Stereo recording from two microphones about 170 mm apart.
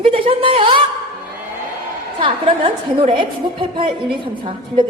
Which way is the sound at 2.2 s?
30° right (ahead or behind).